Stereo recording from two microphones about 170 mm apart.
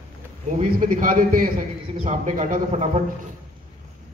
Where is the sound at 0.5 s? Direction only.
50° right (ahead or behind).